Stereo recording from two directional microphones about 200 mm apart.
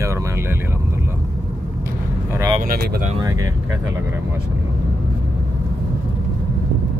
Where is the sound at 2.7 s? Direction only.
40° right (ahead or behind).